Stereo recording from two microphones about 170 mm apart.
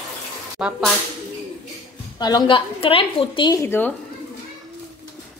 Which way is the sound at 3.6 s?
15° left (ahead or behind).